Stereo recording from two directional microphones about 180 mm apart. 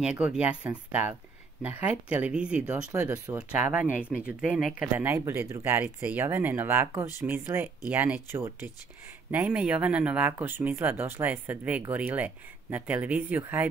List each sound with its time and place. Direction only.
0.0 s speech: 5° right (ahead or behind)